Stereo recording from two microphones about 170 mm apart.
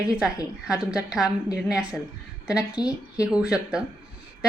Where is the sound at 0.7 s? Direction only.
5° right (ahead or behind).